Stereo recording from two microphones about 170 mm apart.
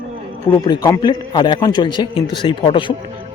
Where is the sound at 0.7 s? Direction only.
25° left (ahead or behind).